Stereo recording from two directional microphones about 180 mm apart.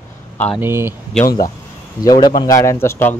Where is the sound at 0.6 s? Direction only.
10° right (ahead or behind).